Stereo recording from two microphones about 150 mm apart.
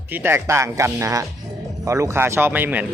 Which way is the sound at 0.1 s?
15° right (ahead or behind).